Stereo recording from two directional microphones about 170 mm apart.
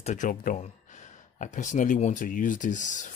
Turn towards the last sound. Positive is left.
turn(degrees=50)  # may be behind; listen again after turning